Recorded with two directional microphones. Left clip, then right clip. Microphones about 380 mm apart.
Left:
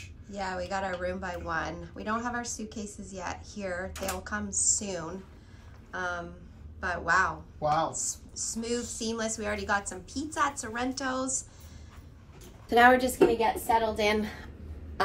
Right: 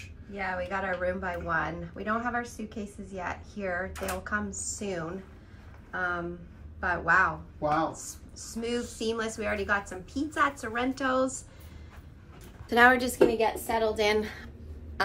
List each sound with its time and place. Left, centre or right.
0.0 s speech: centre
12.6 s speech: centre